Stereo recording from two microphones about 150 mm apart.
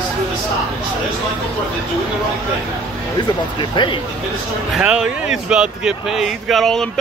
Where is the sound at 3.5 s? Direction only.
30° left (ahead or behind).